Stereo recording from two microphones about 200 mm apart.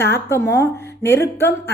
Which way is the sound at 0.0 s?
15° left (ahead or behind).